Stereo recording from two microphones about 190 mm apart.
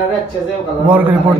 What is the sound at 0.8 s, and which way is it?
Speech, 10° right (ahead or behind).